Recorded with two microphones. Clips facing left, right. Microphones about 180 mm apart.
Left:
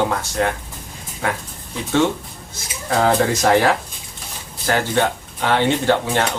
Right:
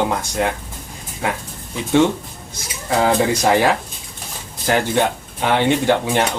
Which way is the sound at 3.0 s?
15° right (ahead or behind).